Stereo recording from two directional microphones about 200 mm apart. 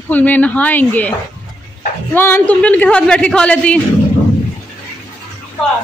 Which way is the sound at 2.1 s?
10° left (ahead or behind).